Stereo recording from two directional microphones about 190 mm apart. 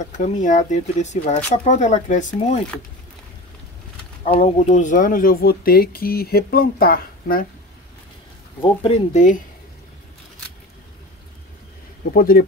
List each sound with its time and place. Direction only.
0.0 s speech: 40° left (ahead or behind)
4.2 s speech: 35° left (ahead or behind); by 7.4 s 50° left (ahead or behind)
8.6 s speech: 30° left (ahead or behind)
12.1 s speech: 50° left (ahead or behind)